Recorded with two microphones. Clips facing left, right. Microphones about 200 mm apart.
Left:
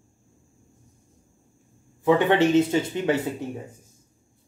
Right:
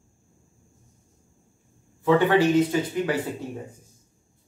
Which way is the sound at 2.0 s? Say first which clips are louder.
Even; 20° left (ahead or behind).